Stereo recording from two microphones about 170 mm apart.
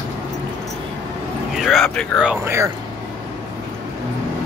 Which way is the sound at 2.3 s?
15° right (ahead or behind).